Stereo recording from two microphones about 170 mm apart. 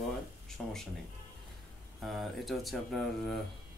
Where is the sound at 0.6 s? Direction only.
Centre (ahead or behind).